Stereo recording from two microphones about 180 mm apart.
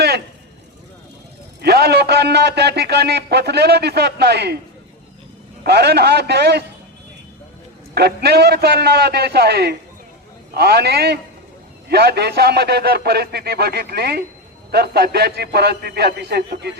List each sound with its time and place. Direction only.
1.6 s a man's voice: 65° right (ahead or behind)
5.6 s a man's voice: 65° right (ahead or behind)
7.9 s a man's voice: 65° right (ahead or behind)